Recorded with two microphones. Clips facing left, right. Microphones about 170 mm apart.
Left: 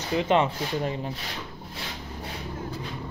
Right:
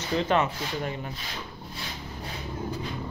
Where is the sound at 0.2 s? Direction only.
25° left (ahead or behind).